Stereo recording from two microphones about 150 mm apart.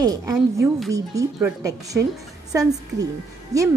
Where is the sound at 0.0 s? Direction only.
25° right (ahead or behind).